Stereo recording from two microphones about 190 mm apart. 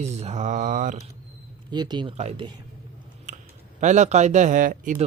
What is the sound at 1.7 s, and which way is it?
Speech, 20° right (ahead or behind).